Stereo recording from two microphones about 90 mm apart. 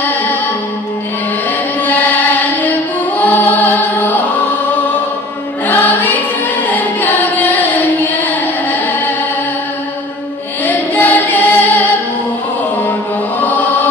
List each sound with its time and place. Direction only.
0.0 s music: 20° left (ahead or behind)
1.9 s music: 20° left (ahead or behind)
5.7 s music: 20° left (ahead or behind)
6.7 s singing: 20° left (ahead or behind)
10.6 s music: 20° left (ahead or behind)
13.4 s chant: 20° left (ahead or behind)